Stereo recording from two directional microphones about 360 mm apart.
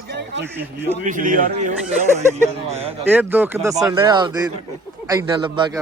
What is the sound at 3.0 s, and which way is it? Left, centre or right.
Speech, centre.